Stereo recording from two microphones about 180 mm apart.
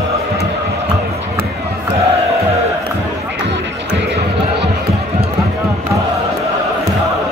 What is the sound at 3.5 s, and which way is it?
Music, 75° right (ahead or behind).